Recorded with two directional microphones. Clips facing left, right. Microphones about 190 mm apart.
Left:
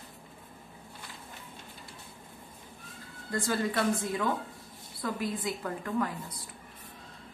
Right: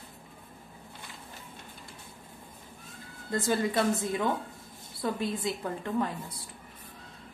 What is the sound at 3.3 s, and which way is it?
Speech, 20° right (ahead or behind).